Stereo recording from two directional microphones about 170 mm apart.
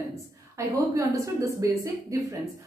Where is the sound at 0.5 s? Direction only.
20° right (ahead or behind).